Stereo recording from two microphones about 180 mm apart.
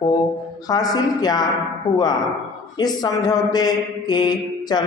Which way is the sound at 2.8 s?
20° left (ahead or behind).